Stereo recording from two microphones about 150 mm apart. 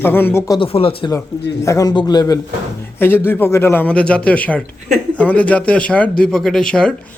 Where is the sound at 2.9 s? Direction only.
15° left (ahead or behind).